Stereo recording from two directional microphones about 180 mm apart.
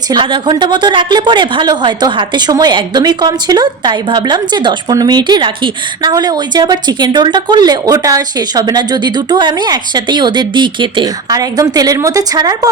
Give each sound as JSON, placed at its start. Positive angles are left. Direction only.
{"t": 0.1, "sound": "a woman's voice", "side_deg": -25}